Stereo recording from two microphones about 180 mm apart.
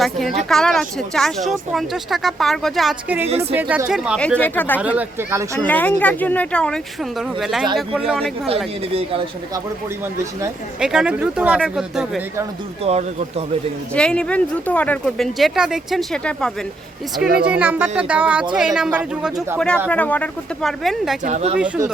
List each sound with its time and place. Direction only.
0.4 s speech: centre (ahead or behind)
4.4 s speech: 10° left (ahead or behind)
4.8 s speech: 10° right (ahead or behind)
5.5 s speech: 10° left (ahead or behind)
10.8 s speech: 5° right (ahead or behind)
12.8 s speech: 35° right (ahead or behind)
13.9 s speech: 5° left (ahead or behind)
17.4 s speech: 5° right (ahead or behind)
19.5 s speech: 5° left (ahead or behind)
21.2 s speech: 40° right (ahead or behind)